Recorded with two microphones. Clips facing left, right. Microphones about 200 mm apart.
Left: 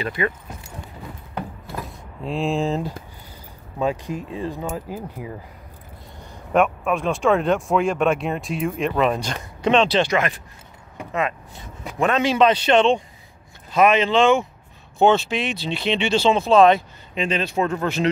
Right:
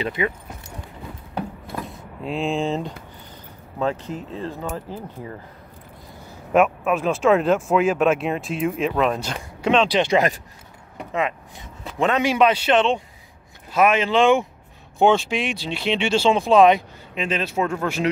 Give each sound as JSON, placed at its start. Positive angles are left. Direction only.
{"t": 0.0, "sound": "speech", "side_deg": -20}
{"t": 1.9, "sound": "speech", "side_deg": 0}
{"t": 3.8, "sound": "speech", "side_deg": 15}
{"t": 6.5, "sound": "speech", "side_deg": -5}
{"t": 10.0, "sound": "speech", "side_deg": -35}
{"t": 11.1, "sound": "speech", "side_deg": -20}
{"t": 17.1, "sound": "speech", "side_deg": -5}